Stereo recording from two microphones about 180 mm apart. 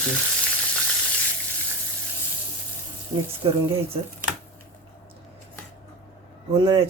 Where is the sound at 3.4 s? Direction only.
30° right (ahead or behind).